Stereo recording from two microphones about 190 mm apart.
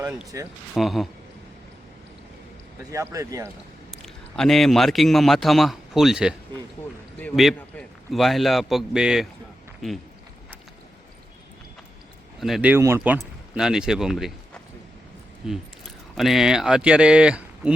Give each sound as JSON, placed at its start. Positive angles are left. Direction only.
{"t": 0.3, "sound": "speech", "side_deg": -15}
{"t": 0.7, "sound": "a man's voice", "side_deg": 0}
{"t": 2.9, "sound": "speech", "side_deg": -15}
{"t": 4.0, "sound": "a man's voice", "side_deg": 0}
{"t": 12.4, "sound": "a man's voice", "side_deg": 0}